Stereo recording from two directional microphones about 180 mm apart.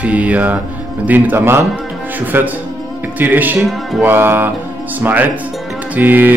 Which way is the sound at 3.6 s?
Centre (ahead or behind).